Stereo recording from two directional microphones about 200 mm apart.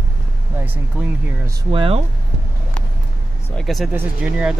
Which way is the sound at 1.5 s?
25° right (ahead or behind).